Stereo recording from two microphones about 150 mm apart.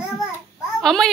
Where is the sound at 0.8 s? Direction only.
Centre (ahead or behind).